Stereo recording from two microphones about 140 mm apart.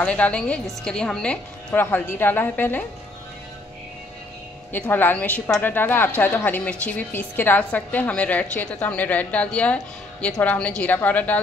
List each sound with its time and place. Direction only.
0.0 s a woman's voice: 10° left (ahead or behind)
4.7 s a woman's voice: 15° left (ahead or behind)